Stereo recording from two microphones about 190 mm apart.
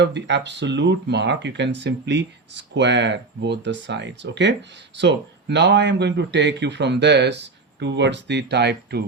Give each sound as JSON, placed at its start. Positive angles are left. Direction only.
{"t": 0.0, "sound": "speech", "side_deg": -65}